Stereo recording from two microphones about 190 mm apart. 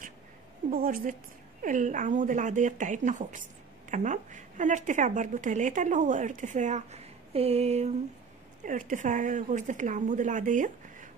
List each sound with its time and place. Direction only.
0.7 s a woman's voice: 50° right (ahead or behind)